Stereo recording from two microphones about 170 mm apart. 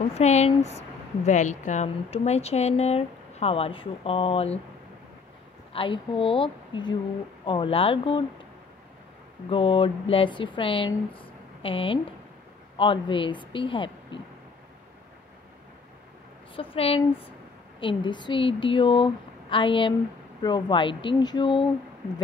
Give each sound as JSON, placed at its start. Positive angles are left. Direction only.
{"t": 0.0, "sound": "speech", "side_deg": 40}
{"t": 5.7, "sound": "speech", "side_deg": 30}
{"t": 9.5, "sound": "speech", "side_deg": 35}
{"t": 11.1, "sound": "a sound", "side_deg": 30}
{"t": 12.7, "sound": "speech", "side_deg": 30}
{"t": 16.5, "sound": "speech", "side_deg": 35}